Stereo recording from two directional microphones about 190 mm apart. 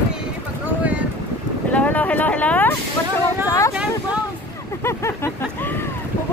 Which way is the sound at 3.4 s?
15° left (ahead or behind).